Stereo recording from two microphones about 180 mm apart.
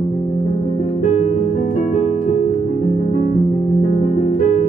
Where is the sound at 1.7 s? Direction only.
40° left (ahead or behind).